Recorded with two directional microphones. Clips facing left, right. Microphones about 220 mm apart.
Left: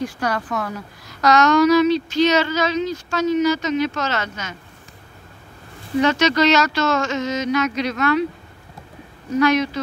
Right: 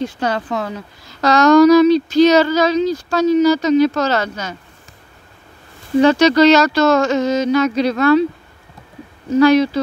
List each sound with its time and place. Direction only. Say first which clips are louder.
0.0 s a woman's voice: right 3 dB; 25° right (ahead or behind)
5.9 s a woman's voice: right 6 dB; 35° right (ahead or behind)
9.3 s a woman's voice: right 6 dB; 30° right (ahead or behind)